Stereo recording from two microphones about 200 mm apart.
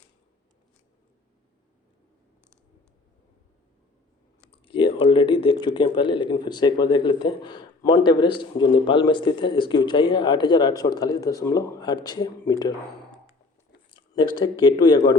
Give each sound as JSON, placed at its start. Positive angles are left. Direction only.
{"t": 4.5, "sound": "speech", "side_deg": 25}
{"t": 13.9, "sound": "speech", "side_deg": 25}